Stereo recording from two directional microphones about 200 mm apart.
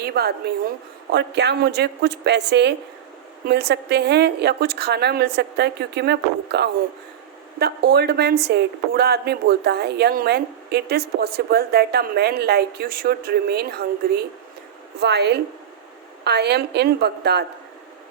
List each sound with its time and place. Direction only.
0.0 s a woman's voice: 50° right (ahead or behind)